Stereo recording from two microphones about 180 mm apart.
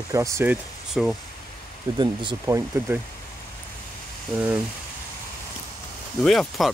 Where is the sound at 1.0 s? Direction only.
Centre (ahead or behind).